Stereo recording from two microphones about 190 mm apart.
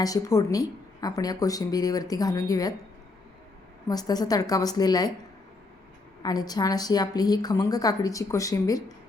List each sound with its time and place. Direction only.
0.0 s a woman's voice: 20° left (ahead or behind)
3.8 s a woman's voice: 20° left (ahead or behind)
6.2 s a woman's voice: 20° left (ahead or behind)